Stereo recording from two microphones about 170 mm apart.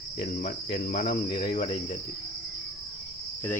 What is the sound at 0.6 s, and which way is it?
Cricket, 50° left (ahead or behind).